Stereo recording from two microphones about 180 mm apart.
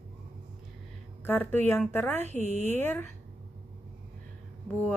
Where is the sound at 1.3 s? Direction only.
10° left (ahead or behind).